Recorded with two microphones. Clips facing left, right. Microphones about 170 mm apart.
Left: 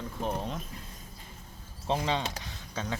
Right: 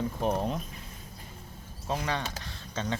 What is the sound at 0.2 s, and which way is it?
Speech, 15° right (ahead or behind).